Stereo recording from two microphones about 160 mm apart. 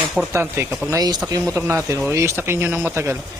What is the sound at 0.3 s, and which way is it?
A man's voice, 15° right (ahead or behind).